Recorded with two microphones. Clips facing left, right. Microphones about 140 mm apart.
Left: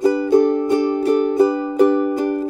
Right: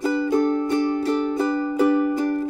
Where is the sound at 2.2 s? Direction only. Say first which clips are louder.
Left 3 dB; 15° left (ahead or behind).